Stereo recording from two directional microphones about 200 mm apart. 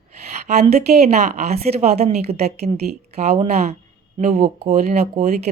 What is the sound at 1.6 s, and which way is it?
Speech, 35° right (ahead or behind).